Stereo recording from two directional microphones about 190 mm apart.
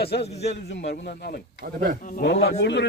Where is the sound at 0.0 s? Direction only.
60° left (ahead or behind).